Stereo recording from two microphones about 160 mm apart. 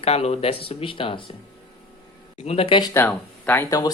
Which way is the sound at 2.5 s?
35° left (ahead or behind).